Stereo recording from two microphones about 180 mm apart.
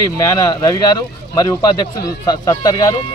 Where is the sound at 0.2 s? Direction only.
20° left (ahead or behind).